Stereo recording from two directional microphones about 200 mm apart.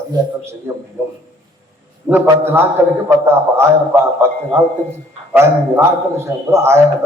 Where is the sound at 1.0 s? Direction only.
10° right (ahead or behind).